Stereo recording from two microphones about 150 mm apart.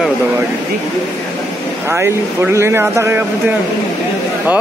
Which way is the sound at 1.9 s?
15° right (ahead or behind).